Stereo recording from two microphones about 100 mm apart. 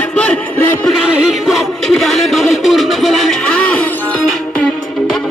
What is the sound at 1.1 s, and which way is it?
Music, 5° right (ahead or behind).